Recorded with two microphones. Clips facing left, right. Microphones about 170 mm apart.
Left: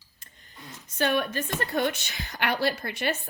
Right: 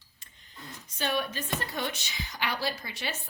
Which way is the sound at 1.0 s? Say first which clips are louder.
Left 5 dB; 55° left (ahead or behind).